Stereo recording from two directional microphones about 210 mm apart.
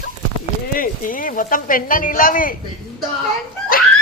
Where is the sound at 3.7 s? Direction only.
45° left (ahead or behind).